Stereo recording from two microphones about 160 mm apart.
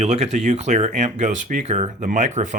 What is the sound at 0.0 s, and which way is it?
Speech, 45° right (ahead or behind).